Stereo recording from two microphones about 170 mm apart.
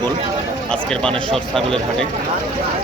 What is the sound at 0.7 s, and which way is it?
Speech, 5° left (ahead or behind).